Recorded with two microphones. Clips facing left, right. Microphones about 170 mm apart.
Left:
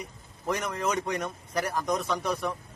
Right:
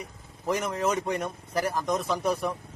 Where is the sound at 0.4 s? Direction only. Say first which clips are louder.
Right 2 dB; 5° right (ahead or behind).